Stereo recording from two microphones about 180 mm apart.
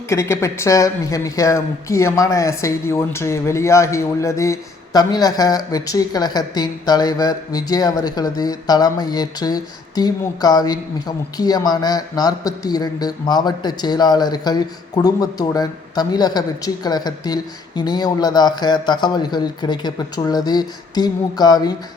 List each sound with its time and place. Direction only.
0.1 s a woman's voice: 15° left (ahead or behind)